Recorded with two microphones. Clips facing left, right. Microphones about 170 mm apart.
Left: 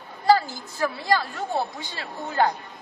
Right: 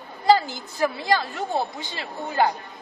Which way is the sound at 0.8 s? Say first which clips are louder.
Right 1 dB; 20° right (ahead or behind).